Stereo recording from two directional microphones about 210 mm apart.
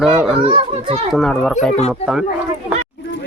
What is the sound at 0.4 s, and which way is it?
Speech, 25° right (ahead or behind).